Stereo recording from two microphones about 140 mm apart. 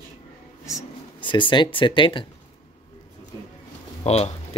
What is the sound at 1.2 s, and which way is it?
Speech, 35° left (ahead or behind).